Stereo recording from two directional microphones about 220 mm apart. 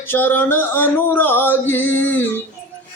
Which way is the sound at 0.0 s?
10° left (ahead or behind).